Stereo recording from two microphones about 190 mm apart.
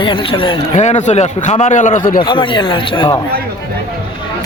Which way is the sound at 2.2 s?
25° left (ahead or behind).